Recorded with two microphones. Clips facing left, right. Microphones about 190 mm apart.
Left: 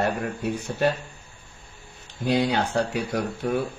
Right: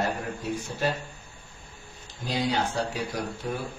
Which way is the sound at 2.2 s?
60° left (ahead or behind).